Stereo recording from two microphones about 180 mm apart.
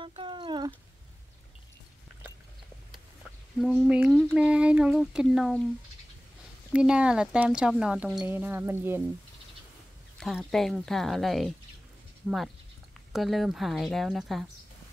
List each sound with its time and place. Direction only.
0.0 s a sound: 30° right (ahead or behind)
3.6 s speech: centre (ahead or behind)
6.7 s speech: 5° right (ahead or behind)
10.1 s speech: centre (ahead or behind)
13.1 s speech: centre (ahead or behind)